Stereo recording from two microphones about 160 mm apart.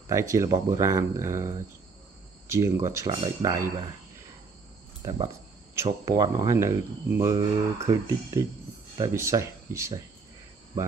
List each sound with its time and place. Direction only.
0.1 s speech: 20° right (ahead or behind)
5.0 s speech: 30° right (ahead or behind)